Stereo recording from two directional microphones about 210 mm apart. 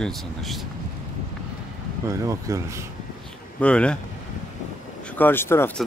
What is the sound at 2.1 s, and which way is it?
Speech, 15° right (ahead or behind).